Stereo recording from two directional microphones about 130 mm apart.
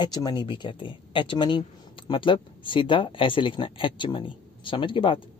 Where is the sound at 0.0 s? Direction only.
35° left (ahead or behind).